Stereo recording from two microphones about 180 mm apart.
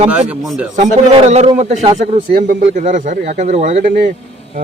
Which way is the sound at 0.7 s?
40° right (ahead or behind).